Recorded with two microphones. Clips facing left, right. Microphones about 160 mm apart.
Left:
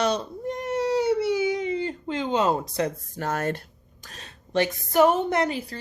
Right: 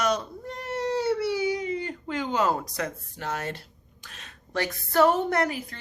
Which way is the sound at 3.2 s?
50° left (ahead or behind).